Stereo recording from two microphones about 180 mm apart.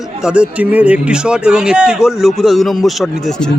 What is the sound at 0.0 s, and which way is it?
Speech, 5° right (ahead or behind).